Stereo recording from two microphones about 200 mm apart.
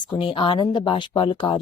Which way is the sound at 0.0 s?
25° left (ahead or behind).